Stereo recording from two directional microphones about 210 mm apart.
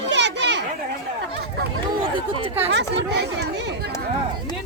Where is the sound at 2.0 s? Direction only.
25° right (ahead or behind).